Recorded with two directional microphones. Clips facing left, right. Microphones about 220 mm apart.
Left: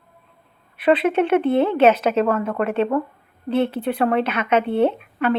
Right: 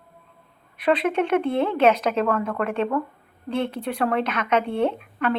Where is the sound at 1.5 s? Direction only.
30° left (ahead or behind).